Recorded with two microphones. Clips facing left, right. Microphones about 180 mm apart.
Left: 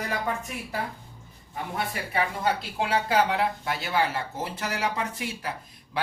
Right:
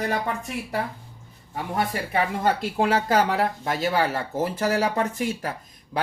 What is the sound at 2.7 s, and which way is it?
Speech, 45° right (ahead or behind).